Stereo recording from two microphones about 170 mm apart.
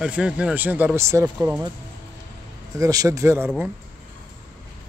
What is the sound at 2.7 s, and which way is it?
Speech, 20° right (ahead or behind).